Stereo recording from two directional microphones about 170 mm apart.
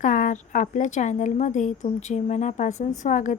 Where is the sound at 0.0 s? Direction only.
50° left (ahead or behind).